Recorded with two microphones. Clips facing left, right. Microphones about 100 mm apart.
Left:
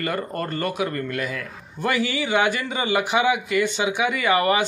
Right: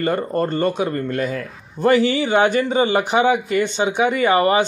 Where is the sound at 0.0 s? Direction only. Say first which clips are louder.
Right 6 dB; 30° right (ahead or behind).